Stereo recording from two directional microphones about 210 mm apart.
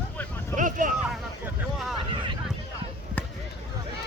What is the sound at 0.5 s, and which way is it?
Vehicle, 40° right (ahead or behind).